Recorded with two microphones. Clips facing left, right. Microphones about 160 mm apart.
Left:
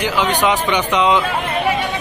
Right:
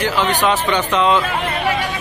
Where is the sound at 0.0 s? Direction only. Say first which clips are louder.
Even; 15° left (ahead or behind).